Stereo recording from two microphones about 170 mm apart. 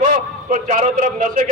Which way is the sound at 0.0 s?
45° right (ahead or behind).